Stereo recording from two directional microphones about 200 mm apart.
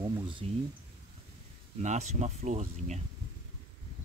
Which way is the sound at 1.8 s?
35° right (ahead or behind).